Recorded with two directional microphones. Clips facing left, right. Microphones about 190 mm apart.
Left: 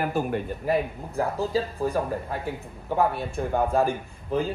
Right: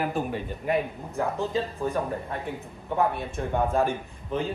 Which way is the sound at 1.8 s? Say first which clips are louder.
Left 2 dB; centre (ahead or behind).